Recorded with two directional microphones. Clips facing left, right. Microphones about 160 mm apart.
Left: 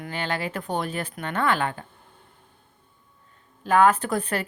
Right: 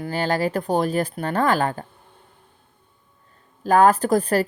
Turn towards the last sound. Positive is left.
turn(degrees=-40)  # may be behind; listen again after turning